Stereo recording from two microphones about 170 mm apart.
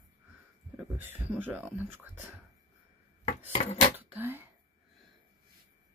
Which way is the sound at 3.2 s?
40° left (ahead or behind).